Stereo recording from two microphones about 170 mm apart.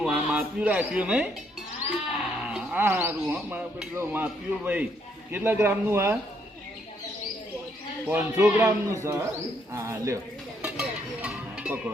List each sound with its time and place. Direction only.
0.0 s speech: 5° right (ahead or behind)
2.4 s speech: 10° right (ahead or behind)
8.0 s speech: 10° right (ahead or behind)
10.6 s a sound: 5° right (ahead or behind)